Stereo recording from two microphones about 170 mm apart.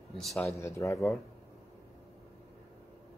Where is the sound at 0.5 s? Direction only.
20° left (ahead or behind).